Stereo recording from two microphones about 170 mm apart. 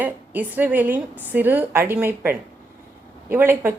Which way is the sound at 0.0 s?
10° right (ahead or behind).